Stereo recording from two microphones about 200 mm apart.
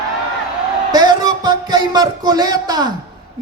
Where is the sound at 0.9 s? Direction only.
20° right (ahead or behind).